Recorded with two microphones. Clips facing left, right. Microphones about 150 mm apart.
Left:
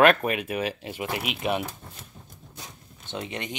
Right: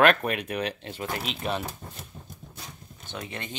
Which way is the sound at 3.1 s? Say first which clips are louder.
Left 3 dB; 20° left (ahead or behind).